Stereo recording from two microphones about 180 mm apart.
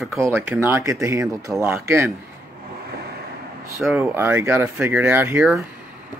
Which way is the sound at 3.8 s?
10° right (ahead or behind).